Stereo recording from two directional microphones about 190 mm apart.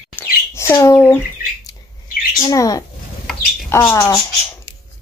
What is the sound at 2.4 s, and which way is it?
Speech, 20° left (ahead or behind).